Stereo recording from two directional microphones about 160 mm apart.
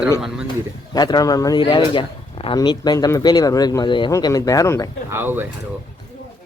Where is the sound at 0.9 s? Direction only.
25° left (ahead or behind).